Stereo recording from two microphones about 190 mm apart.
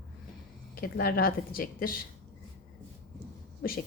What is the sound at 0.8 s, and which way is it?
A woman's voice, 55° left (ahead or behind).